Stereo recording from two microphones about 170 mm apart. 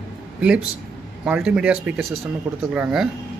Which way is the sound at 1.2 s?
5° right (ahead or behind).